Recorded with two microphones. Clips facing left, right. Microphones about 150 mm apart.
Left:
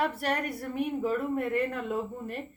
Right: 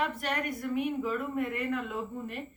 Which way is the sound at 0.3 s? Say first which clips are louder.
Left 1 dB; 35° left (ahead or behind).